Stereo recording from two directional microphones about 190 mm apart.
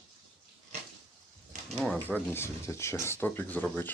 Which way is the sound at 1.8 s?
5° left (ahead or behind).